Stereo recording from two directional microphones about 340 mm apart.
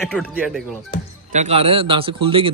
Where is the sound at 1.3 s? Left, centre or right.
Centre.